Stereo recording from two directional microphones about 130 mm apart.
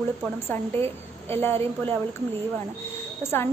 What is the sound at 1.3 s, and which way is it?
Speech, 15° left (ahead or behind).